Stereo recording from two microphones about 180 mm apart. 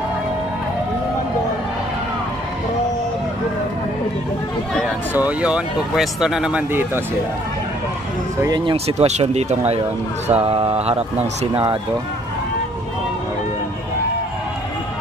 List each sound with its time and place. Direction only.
5.1 s speech: 5° right (ahead or behind)
8.4 s speech: 20° right (ahead or behind)